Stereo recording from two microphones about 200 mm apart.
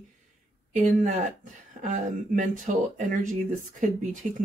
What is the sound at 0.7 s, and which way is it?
Speech, 40° right (ahead or behind).